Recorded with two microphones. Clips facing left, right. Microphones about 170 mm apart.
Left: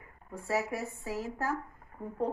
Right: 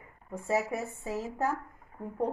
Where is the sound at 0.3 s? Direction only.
20° right (ahead or behind).